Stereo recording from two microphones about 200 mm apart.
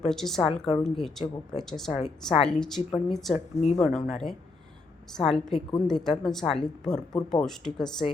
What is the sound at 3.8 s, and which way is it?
Speech, centre (ahead or behind).